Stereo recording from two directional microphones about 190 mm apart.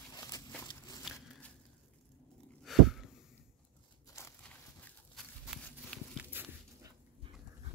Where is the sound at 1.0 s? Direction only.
5° left (ahead or behind).